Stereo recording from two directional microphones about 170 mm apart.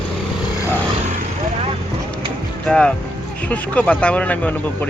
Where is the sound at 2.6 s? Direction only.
5° left (ahead or behind).